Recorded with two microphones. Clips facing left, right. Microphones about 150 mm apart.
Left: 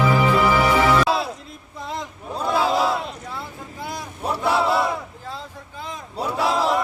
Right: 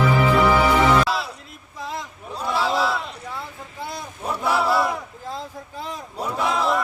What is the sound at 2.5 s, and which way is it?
Crowd, 45° left (ahead or behind).